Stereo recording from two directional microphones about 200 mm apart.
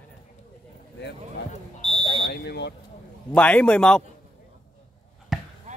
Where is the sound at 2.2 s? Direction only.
55° left (ahead or behind).